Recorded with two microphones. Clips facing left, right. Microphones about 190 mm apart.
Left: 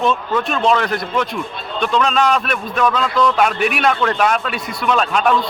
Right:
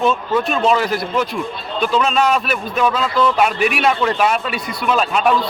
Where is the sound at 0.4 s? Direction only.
Centre (ahead or behind).